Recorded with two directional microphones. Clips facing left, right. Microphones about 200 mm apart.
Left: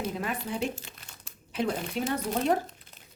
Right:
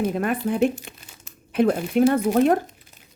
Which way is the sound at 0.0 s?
60° right (ahead or behind).